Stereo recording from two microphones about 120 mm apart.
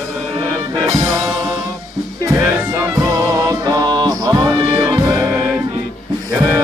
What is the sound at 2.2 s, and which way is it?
Music, 25° right (ahead or behind).